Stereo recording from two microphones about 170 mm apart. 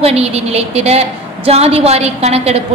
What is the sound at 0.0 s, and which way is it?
A woman's voice, 35° right (ahead or behind).